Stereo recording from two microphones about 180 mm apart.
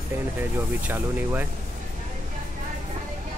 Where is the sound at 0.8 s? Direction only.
10° right (ahead or behind).